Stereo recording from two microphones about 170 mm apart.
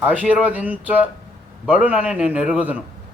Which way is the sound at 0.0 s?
10° right (ahead or behind).